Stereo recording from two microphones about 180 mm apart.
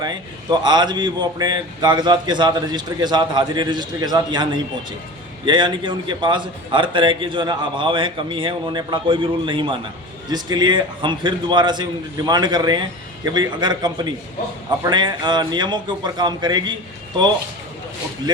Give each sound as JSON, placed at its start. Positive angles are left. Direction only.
{"t": 0.0, "sound": "a man's voice", "side_deg": -25}